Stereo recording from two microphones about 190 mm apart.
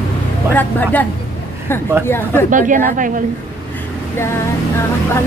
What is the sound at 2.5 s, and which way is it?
Speech, 45° right (ahead or behind).